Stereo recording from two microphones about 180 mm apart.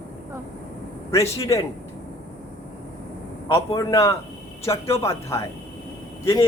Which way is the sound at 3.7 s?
20° left (ahead or behind).